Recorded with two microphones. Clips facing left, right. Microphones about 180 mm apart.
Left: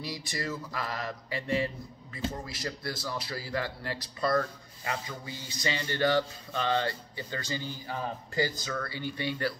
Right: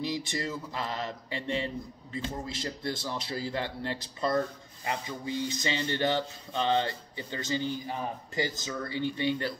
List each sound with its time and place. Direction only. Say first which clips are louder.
0.0 s speech: right 4 dB; 20° right (ahead or behind)